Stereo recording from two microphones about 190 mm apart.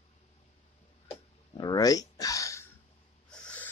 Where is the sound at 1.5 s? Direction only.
20° left (ahead or behind).